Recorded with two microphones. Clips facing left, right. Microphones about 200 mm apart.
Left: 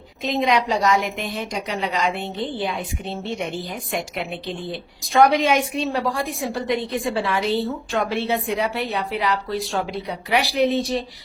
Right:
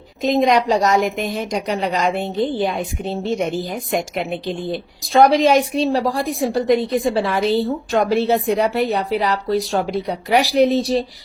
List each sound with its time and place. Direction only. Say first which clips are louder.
0.2 s a woman's voice: right 5 dB; 45° right (ahead or behind)